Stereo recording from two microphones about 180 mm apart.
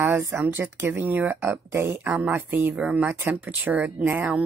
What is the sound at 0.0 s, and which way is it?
Speech, 15° right (ahead or behind).